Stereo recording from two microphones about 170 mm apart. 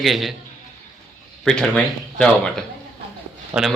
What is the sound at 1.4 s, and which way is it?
Speech, 5° left (ahead or behind).